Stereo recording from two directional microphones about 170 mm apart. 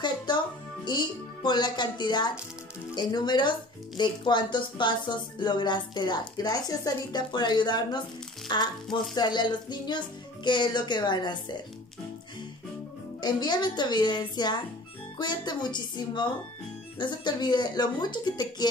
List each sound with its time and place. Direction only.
0.3 s speech: 25° left (ahead or behind)
13.2 s speech: 25° left (ahead or behind)